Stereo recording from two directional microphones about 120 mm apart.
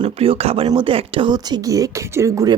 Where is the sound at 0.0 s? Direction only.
50° right (ahead or behind).